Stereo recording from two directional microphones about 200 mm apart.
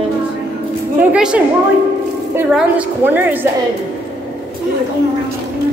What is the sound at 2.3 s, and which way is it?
A woman's voice, 10° right (ahead or behind).